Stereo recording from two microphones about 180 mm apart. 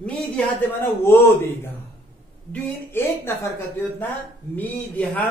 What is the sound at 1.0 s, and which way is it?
Speech, 15° left (ahead or behind).